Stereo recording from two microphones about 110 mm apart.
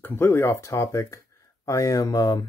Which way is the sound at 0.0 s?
20° left (ahead or behind).